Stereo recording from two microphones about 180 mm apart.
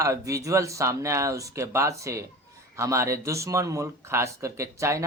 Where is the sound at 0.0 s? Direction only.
15° right (ahead or behind).